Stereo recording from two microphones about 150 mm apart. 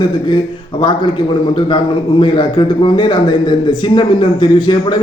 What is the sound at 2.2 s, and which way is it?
A man's voice, 30° left (ahead or behind).